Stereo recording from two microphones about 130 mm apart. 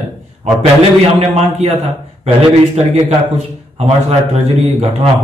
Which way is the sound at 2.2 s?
50° right (ahead or behind).